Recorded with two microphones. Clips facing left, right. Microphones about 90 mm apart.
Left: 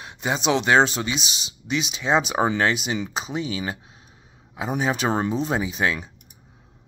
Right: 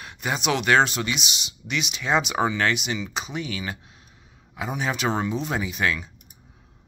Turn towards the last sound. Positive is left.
turn(degrees=30)  # may be behind; listen again after turning